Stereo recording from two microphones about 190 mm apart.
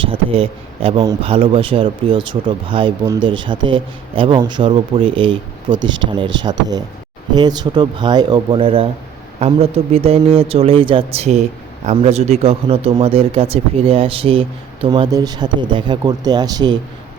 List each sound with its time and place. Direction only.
0.0 s a man's voice: 30° right (ahead or behind)